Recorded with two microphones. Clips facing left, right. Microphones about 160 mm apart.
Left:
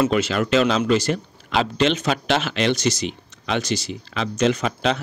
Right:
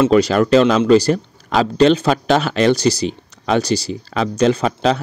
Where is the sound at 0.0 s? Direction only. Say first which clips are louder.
Right 7 dB; 35° right (ahead or behind).